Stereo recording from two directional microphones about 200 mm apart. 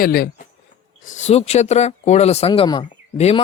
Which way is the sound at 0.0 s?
50° left (ahead or behind).